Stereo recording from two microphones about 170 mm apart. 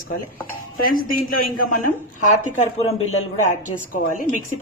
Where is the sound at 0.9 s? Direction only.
55° left (ahead or behind).